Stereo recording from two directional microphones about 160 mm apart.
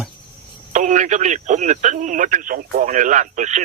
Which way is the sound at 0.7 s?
50° right (ahead or behind).